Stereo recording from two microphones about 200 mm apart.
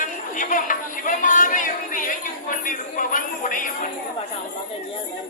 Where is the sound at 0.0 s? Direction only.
40° left (ahead or behind).